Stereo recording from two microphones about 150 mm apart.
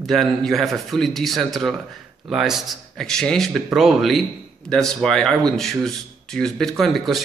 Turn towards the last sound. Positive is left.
turn(degrees=0)  # may be behind; listen again after turning